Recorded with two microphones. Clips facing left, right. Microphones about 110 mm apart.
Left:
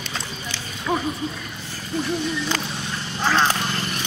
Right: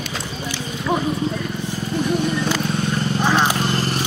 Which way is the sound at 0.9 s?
15° right (ahead or behind).